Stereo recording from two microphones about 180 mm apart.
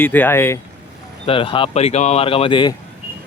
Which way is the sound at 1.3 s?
30° left (ahead or behind).